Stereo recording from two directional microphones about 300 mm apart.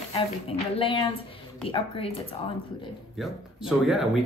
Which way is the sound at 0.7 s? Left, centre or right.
Centre.